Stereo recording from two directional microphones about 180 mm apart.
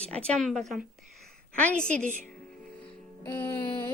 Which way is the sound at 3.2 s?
10° left (ahead or behind).